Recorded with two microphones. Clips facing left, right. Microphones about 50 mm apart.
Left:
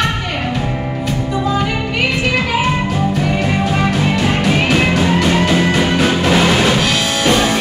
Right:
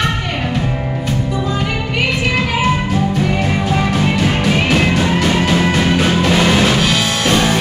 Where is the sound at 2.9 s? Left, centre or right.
Centre.